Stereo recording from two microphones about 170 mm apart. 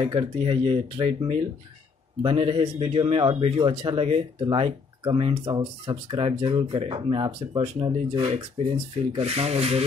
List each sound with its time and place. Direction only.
0.0 s speech: 30° right (ahead or behind)
9.1 s speech: 40° right (ahead or behind)